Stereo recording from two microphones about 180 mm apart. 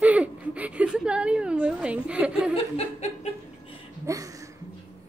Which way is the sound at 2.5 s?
35° left (ahead or behind).